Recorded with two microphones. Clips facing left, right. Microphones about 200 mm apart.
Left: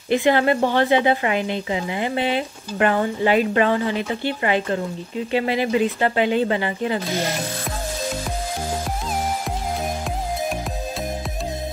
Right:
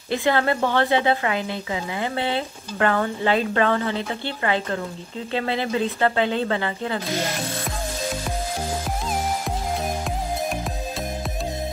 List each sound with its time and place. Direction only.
0.1 s a woman's voice: 15° left (ahead or behind)